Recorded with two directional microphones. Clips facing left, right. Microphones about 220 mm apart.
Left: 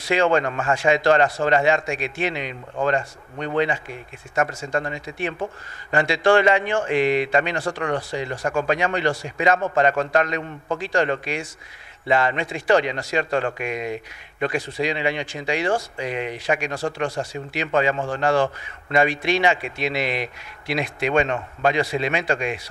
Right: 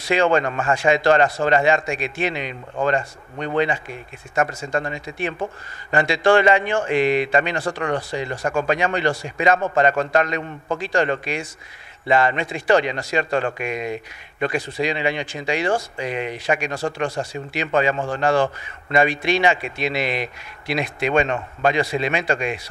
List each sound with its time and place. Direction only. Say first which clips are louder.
0.1 s speech: right 1 dB; 20° right (ahead or behind)